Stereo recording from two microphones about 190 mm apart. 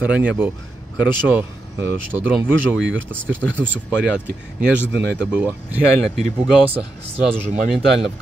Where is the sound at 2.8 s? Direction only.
85° right.